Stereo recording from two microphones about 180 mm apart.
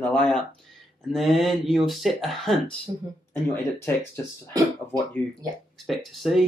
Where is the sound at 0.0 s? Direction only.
5° left (ahead or behind).